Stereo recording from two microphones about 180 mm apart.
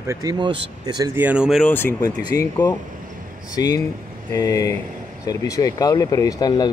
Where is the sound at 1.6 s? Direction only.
10° left (ahead or behind).